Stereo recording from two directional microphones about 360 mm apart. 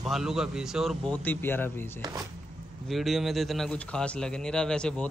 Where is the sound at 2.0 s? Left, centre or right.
Centre.